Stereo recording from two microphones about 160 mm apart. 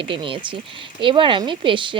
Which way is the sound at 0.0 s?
35° right (ahead or behind).